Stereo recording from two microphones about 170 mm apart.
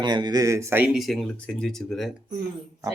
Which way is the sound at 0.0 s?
25° right (ahead or behind).